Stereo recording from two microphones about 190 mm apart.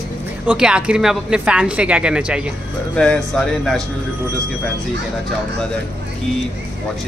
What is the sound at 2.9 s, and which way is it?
Speech, 5° left (ahead or behind).